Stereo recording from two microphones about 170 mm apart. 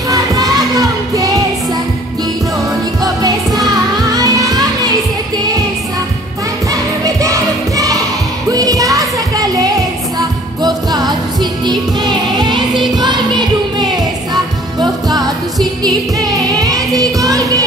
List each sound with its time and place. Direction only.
0.1 s music: 20° right (ahead or behind)
3.0 s music: 20° right (ahead or behind)
6.7 s music: 20° right (ahead or behind)